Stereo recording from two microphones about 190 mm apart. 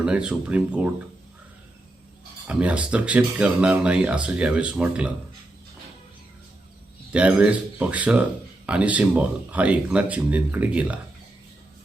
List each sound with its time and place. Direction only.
0.0 s speech: 5° right (ahead or behind)
2.5 s speech: 5° right (ahead or behind)
7.1 s speech: 5° right (ahead or behind)